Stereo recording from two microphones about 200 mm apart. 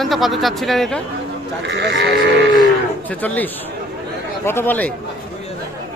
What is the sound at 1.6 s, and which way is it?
Speech, 60° right (ahead or behind).